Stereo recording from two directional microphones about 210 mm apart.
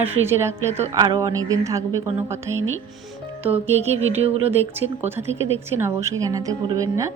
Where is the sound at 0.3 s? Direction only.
10° right (ahead or behind).